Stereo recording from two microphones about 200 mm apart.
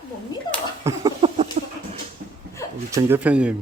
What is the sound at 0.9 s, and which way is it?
Speech, 15° right (ahead or behind).